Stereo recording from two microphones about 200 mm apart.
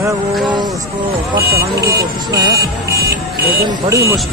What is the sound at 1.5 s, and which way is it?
Speech, 50° right (ahead or behind).